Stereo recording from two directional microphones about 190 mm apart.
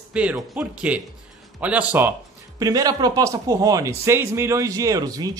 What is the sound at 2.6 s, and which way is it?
A man's voice, 20° right (ahead or behind).